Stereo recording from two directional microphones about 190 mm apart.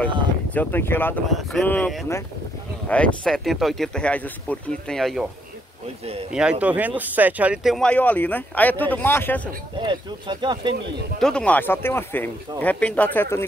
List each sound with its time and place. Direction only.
0.6 s speech: 10° left (ahead or behind)
6.3 s speech: 5° right (ahead or behind); by 9.4 s 10° left (ahead or behind)
9.8 s speech: 25° right (ahead or behind)
11.1 s speech: 5° left (ahead or behind)